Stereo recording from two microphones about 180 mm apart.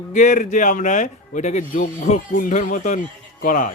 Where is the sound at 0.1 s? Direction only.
45° left (ahead or behind).